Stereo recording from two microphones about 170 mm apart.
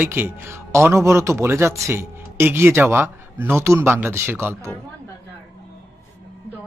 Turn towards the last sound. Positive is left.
turn(degrees=-15)  # may be behind; listen again after turning